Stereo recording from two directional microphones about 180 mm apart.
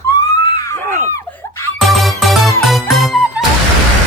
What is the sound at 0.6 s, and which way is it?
Screaming, 15° left (ahead or behind).